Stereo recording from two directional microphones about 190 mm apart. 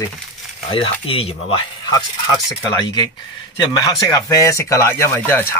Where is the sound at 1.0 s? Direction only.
30° left (ahead or behind).